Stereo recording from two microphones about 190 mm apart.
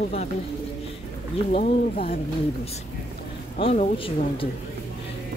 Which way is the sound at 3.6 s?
35° left (ahead or behind).